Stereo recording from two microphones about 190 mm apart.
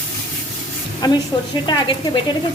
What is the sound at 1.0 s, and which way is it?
Speech, 20° left (ahead or behind).